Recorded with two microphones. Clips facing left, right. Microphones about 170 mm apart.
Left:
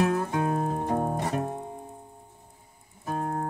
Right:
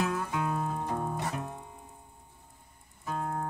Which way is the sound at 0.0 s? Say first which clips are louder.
Left 6 dB; 40° left (ahead or behind).